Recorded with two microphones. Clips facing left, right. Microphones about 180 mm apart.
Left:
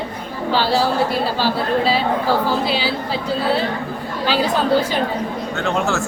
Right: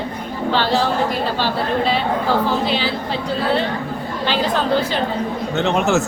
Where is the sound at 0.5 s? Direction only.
10° left (ahead or behind).